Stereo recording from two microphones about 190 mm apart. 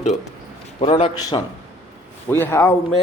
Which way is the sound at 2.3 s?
10° left (ahead or behind).